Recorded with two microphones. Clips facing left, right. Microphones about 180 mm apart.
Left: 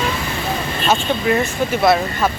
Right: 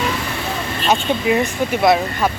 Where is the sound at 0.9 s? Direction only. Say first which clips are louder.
Right 1 dB; 10° right (ahead or behind).